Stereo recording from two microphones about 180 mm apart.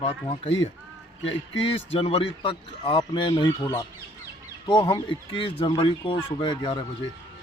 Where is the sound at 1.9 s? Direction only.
30° left (ahead or behind).